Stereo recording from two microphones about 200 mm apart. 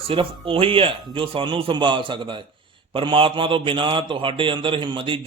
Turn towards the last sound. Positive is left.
turn(degrees=-25)  # may be behind; listen again after turning